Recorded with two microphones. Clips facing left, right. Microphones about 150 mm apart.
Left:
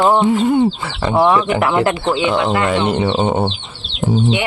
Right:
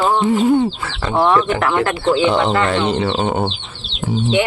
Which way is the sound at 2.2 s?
Centre (ahead or behind).